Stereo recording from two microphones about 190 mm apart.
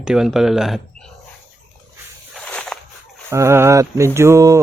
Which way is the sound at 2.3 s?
5° left (ahead or behind).